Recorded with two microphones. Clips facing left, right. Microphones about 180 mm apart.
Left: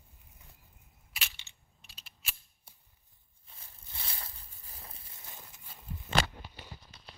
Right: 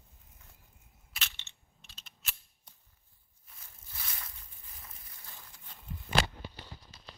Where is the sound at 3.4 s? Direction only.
30° left (ahead or behind).